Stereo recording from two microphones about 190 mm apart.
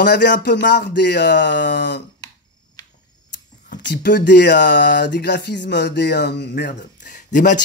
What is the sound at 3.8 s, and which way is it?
Speech, 65° left (ahead or behind).